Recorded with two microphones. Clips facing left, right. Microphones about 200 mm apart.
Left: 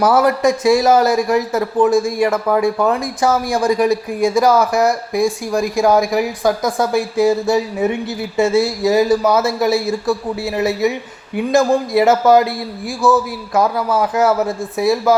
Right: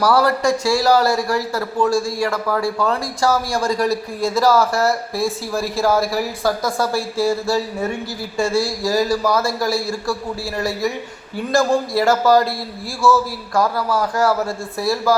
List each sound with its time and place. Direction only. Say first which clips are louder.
0.0 s a man's voice: left 3 dB; 20° left (ahead or behind)